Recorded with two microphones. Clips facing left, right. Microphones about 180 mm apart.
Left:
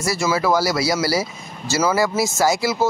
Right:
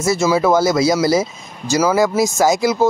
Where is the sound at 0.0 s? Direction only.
20° right (ahead or behind).